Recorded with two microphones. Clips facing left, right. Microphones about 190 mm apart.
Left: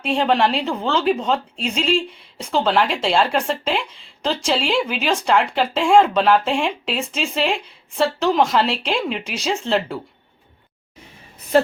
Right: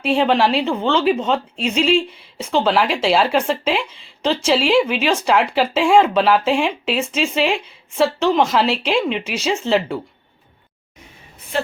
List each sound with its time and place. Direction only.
0.0 s speech: centre (ahead or behind)
11.5 s a woman's voice: 40° left (ahead or behind)